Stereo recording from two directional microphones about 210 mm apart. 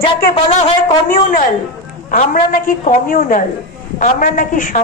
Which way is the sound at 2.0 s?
40° left (ahead or behind).